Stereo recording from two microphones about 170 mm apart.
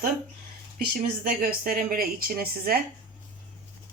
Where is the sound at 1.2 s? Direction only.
60° right (ahead or behind).